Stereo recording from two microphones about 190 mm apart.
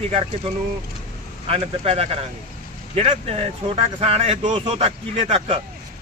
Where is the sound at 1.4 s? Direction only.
30° right (ahead or behind).